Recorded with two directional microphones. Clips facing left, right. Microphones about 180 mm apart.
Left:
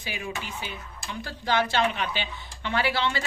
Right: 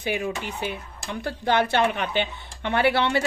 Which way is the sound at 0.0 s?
60° right (ahead or behind).